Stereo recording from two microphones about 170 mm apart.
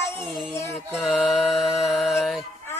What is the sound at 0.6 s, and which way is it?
Mantra, 15° left (ahead or behind).